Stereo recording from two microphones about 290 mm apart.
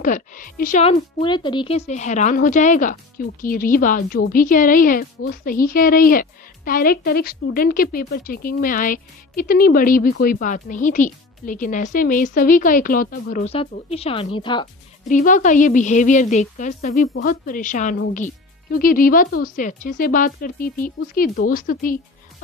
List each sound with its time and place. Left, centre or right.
0.0 s a woman's voice: left